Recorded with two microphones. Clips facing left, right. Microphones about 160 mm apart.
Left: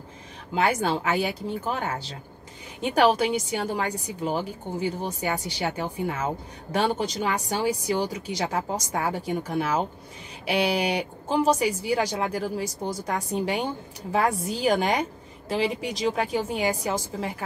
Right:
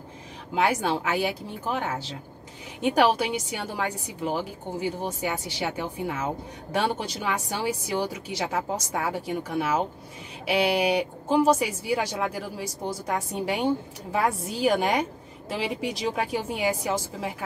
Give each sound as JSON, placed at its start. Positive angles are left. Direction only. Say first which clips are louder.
{"t": 0.6, "sound": "a woman's voice", "louder": "even", "side_deg": -5}
{"t": 7.2, "sound": "a woman's voice", "louder": "left 1 dB", "side_deg": -5}